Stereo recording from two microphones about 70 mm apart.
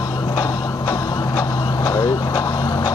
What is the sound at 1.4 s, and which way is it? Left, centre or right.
Vehicle, left.